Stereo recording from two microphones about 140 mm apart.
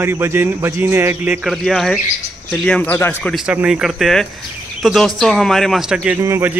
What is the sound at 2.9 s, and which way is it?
Speech, 15° left (ahead or behind).